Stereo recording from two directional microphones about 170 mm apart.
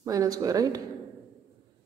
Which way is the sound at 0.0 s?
20° right (ahead or behind).